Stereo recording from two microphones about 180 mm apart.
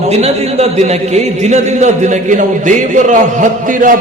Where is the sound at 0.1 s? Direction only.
35° right (ahead or behind).